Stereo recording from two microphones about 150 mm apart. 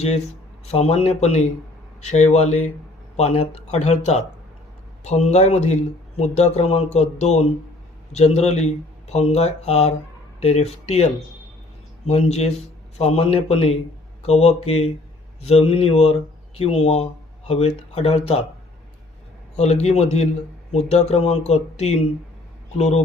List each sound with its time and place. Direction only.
0.6 s speech: 45° left (ahead or behind)
19.5 s speech: 45° left (ahead or behind)